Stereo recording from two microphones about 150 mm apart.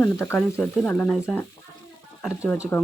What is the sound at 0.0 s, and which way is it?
Speech, 15° left (ahead or behind).